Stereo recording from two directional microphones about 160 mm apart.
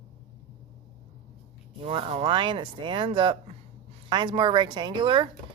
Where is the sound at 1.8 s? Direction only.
35° right (ahead or behind).